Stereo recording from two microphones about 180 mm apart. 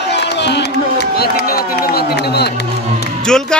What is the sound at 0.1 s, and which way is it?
Run, 70° left (ahead or behind).